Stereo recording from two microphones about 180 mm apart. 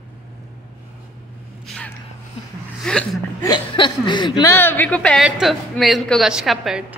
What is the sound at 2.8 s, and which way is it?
Chuckle, 5° left (ahead or behind).